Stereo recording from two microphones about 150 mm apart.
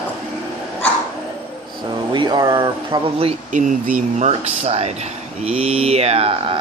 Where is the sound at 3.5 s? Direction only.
55° right (ahead or behind).